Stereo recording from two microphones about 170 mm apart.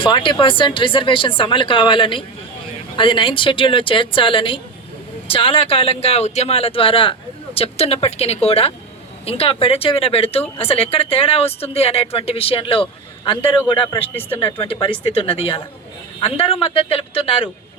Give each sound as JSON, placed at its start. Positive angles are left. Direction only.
{"t": 0.0, "sound": "speech", "side_deg": 30}